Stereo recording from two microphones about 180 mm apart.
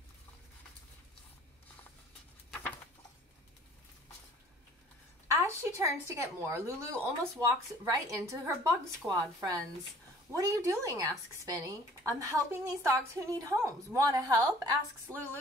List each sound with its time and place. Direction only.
5.3 s a woman's voice: 15° right (ahead or behind)